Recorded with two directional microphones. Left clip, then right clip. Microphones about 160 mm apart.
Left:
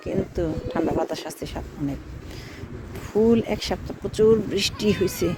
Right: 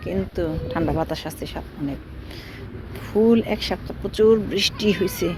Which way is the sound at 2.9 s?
25° left (ahead or behind).